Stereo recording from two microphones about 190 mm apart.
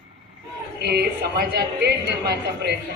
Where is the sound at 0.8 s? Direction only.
55° right (ahead or behind).